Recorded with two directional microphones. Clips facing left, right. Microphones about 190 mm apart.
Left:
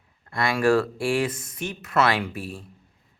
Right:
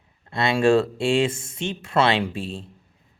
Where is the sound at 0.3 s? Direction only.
25° right (ahead or behind).